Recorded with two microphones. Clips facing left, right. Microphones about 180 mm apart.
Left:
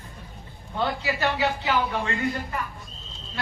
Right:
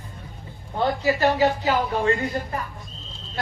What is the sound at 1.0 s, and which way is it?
A woman's voice, 40° right (ahead or behind).